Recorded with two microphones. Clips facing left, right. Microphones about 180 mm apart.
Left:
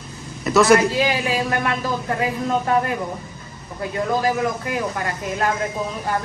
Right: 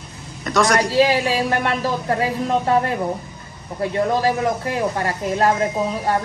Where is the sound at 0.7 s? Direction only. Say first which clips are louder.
Right 2 dB; 30° right (ahead or behind).